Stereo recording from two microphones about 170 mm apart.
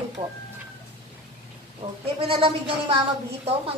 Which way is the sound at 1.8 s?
35° right (ahead or behind).